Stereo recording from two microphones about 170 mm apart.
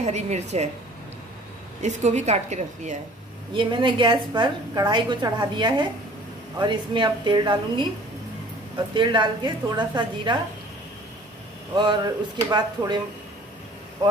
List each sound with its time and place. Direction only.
0.0 s a woman's voice: 40° right (ahead or behind)
1.8 s a woman's voice: 45° right (ahead or behind)
3.5 s a woman's voice: 30° right (ahead or behind)
8.9 s a woman's voice: 25° right (ahead or behind)
11.7 s a woman's voice: 25° right (ahead or behind)